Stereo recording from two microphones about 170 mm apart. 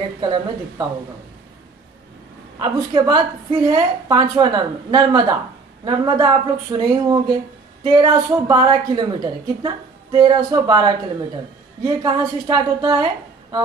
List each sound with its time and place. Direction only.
0.2 s a woman's voice: 25° right (ahead or behind)
2.6 s a woman's voice: 25° right (ahead or behind)